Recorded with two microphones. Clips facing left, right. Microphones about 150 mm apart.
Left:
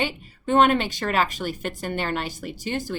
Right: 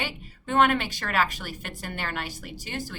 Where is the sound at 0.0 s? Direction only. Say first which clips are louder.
Left 7 dB; 25° left (ahead or behind).